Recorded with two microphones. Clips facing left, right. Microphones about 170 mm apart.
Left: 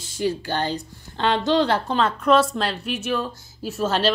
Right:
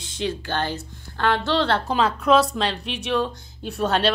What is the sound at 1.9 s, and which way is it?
A woman's voice, centre (ahead or behind).